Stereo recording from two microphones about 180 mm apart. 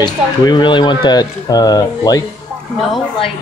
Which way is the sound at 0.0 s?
25° left (ahead or behind).